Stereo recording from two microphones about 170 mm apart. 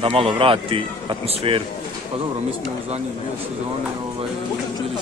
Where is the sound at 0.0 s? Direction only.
30° right (ahead or behind).